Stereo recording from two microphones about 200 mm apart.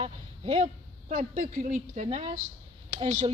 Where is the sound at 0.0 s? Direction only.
30° right (ahead or behind).